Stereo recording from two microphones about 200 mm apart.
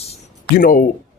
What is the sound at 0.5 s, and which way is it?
Speech, 45° left (ahead or behind).